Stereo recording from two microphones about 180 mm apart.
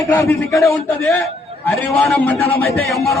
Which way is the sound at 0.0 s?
15° left (ahead or behind).